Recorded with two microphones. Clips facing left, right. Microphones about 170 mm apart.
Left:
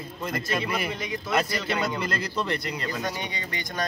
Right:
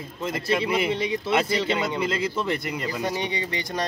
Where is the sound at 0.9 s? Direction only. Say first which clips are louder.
Right 4 dB; 30° right (ahead or behind).